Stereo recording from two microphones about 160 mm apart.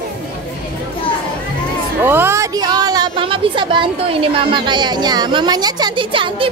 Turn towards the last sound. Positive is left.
turn(degrees=-30)  # may be behind; listen again after turning